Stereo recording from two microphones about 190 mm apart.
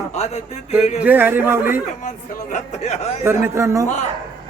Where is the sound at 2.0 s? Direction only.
40° left (ahead or behind).